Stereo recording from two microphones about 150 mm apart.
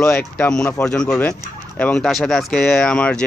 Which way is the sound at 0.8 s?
5° left (ahead or behind).